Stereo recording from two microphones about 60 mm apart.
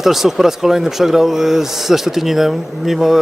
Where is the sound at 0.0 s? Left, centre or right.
Centre.